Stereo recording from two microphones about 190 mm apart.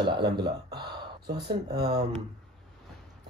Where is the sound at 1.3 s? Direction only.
55° right (ahead or behind).